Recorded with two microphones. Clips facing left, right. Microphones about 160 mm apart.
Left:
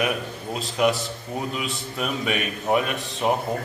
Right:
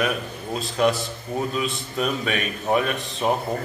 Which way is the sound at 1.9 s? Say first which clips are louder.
Right 1 dB; 15° left (ahead or behind).